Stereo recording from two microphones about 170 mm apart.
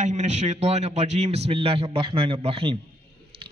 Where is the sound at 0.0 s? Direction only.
40° right (ahead or behind).